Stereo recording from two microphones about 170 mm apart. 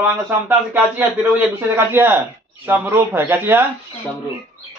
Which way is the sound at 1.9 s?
10° right (ahead or behind).